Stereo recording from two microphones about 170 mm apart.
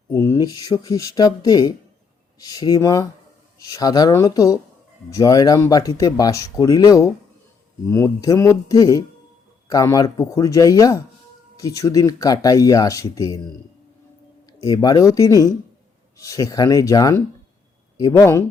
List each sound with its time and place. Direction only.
0.1 s speech: 15° left (ahead or behind)
14.4 s speech: 20° left (ahead or behind)